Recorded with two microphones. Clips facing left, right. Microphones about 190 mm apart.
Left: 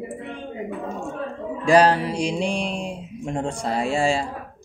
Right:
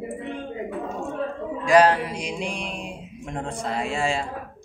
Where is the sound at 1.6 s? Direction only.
30° left (ahead or behind).